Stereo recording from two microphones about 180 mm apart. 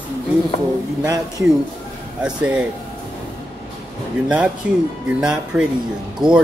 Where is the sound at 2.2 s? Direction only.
5° right (ahead or behind).